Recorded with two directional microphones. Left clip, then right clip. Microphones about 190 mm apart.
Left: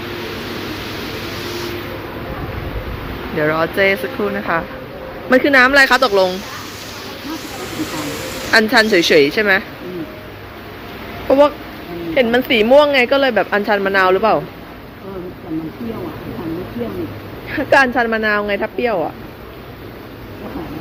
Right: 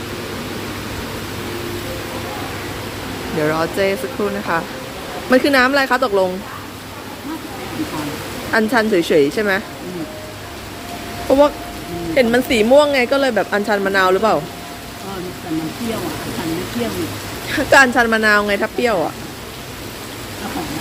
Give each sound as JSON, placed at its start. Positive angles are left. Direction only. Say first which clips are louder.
{"t": 3.3, "sound": "speech", "louder": "left 2 dB", "side_deg": -5}
{"t": 8.5, "sound": "speech", "louder": "left 4 dB", "side_deg": 0}
{"t": 11.3, "sound": "speech", "louder": "left 1 dB", "side_deg": -10}
{"t": 17.5, "sound": "speech", "louder": "right 1 dB", "side_deg": -10}